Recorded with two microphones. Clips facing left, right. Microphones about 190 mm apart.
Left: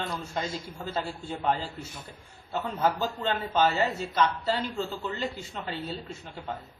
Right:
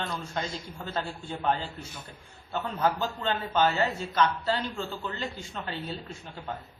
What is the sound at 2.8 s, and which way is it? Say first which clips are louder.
Speech: even; 5° left (ahead or behind).